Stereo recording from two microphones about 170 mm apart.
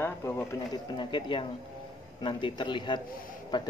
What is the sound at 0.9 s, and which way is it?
Speech, 30° left (ahead or behind).